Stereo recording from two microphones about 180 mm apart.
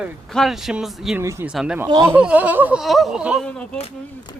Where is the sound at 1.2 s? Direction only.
15° right (ahead or behind).